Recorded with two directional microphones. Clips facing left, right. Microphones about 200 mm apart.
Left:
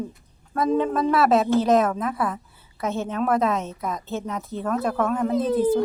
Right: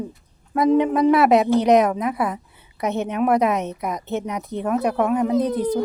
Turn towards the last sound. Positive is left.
turn(degrees=-15)  # may be behind; listen again after turning